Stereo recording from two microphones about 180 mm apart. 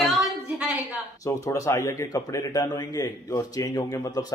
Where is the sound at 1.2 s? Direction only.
20° left (ahead or behind).